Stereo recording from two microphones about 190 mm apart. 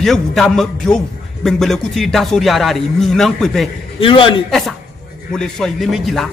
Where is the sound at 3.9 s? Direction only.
25° left (ahead or behind).